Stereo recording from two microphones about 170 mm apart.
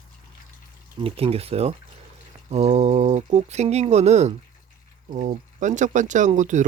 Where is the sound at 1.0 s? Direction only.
35° right (ahead or behind).